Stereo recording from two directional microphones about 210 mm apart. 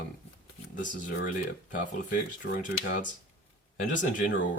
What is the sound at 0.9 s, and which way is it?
Speech, 40° left (ahead or behind).